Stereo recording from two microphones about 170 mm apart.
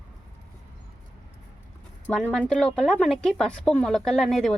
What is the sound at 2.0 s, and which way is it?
Speech, 10° left (ahead or behind).